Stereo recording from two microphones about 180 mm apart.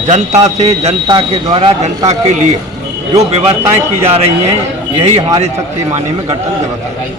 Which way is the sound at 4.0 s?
35° right (ahead or behind).